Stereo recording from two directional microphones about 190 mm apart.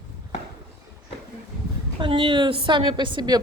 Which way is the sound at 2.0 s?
25° right (ahead or behind).